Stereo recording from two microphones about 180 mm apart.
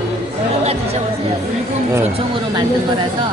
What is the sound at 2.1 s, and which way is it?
Speech, 25° right (ahead or behind).